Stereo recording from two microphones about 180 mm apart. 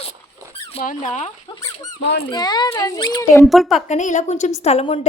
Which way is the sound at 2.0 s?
70° left (ahead or behind).